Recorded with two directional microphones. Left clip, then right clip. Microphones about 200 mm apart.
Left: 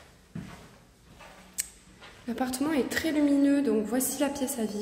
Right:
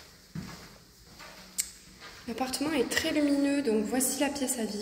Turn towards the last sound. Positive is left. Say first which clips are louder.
# left 1 dB
turn(degrees=25)  # may be behind; listen again after turning